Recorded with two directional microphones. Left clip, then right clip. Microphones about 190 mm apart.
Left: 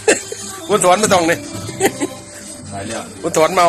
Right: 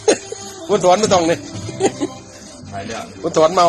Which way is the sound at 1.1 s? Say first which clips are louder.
Left 1 dB; 20° right (ahead or behind).